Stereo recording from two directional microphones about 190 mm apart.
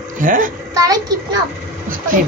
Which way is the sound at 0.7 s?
20° right (ahead or behind).